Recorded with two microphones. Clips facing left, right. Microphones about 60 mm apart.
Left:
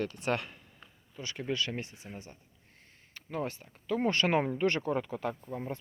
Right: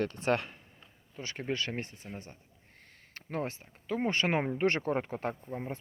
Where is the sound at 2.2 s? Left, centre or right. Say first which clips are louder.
Right 1 dB; right.